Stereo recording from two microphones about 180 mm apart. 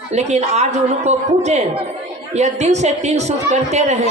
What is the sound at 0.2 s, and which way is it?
A man's voice, 40° right (ahead or behind).